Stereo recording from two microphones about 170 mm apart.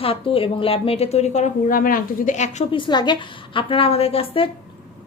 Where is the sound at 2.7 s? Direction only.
30° left (ahead or behind).